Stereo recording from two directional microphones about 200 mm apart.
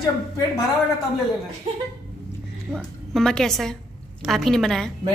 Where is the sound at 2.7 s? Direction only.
Centre (ahead or behind).